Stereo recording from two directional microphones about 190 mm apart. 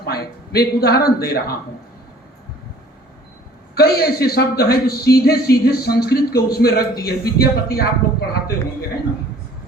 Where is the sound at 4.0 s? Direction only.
55° left (ahead or behind).